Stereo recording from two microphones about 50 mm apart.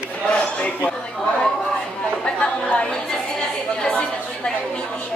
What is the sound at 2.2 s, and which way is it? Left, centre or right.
Chatter, left.